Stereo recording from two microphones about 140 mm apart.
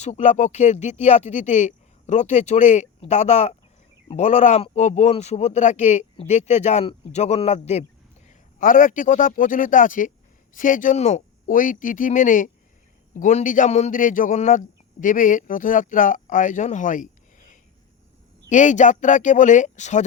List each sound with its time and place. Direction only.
0.0 s speech: 55° left (ahead or behind)
8.3 s speech: 70° left (ahead or behind)